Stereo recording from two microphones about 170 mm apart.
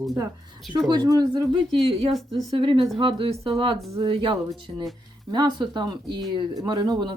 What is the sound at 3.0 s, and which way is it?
Speech, 30° right (ahead or behind).